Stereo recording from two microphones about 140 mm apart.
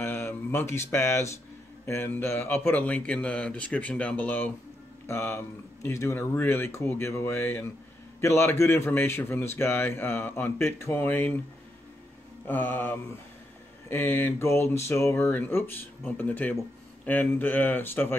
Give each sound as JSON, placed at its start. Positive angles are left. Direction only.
{"t": 0.0, "sound": "a man's voice", "side_deg": 15}
{"t": 12.4, "sound": "a man's voice", "side_deg": 15}